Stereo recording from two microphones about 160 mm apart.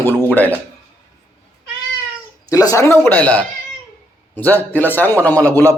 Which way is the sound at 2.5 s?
20° left (ahead or behind).